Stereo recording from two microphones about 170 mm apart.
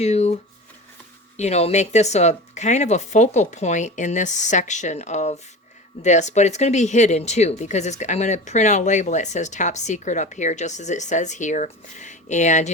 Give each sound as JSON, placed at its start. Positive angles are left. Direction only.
{"t": 0.0, "sound": "speech", "side_deg": 40}
{"t": 1.4, "sound": "speech", "side_deg": 40}